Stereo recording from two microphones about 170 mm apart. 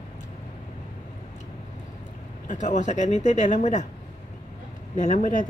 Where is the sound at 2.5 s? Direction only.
45° left (ahead or behind).